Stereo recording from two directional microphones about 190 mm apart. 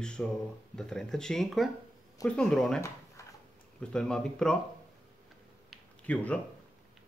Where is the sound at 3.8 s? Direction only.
5° left (ahead or behind).